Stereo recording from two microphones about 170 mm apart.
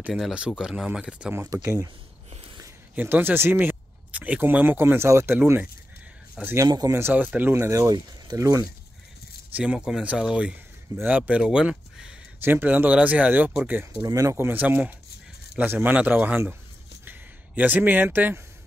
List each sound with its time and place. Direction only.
0.0 s speech: 5° right (ahead or behind)
1.4 s speech: 15° right (ahead or behind)
3.0 s speech: 10° right (ahead or behind)
9.5 s speech: 5° right (ahead or behind)
17.0 s a sound: 10° right (ahead or behind)